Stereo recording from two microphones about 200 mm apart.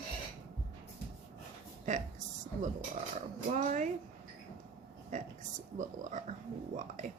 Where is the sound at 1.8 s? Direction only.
35° right (ahead or behind).